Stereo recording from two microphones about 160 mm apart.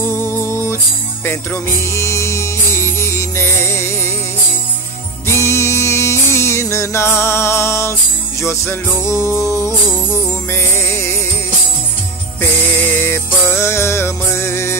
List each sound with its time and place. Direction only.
0.1 s music: 15° left (ahead or behind)
5.2 s music: 15° left (ahead or behind)
12.4 s music: 15° left (ahead or behind)